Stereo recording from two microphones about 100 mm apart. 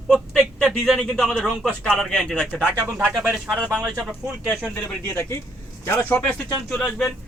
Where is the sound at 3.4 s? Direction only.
5° right (ahead or behind).